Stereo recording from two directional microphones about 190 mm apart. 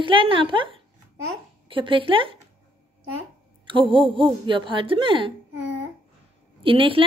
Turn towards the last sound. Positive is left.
turn(degrees=-25)  # may be behind; listen again after turning